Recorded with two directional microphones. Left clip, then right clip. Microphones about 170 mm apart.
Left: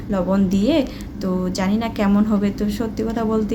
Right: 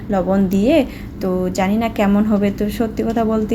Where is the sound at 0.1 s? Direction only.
10° right (ahead or behind).